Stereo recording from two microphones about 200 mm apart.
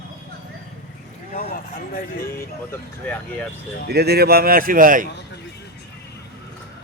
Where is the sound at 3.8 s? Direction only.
55° right (ahead or behind).